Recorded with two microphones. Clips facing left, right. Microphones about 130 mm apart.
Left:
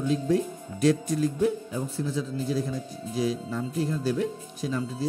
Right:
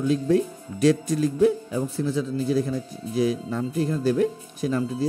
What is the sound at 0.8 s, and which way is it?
A man's voice, 90° right.